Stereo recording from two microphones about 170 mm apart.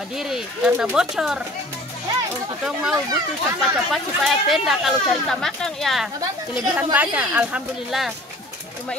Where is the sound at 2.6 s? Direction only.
5° right (ahead or behind).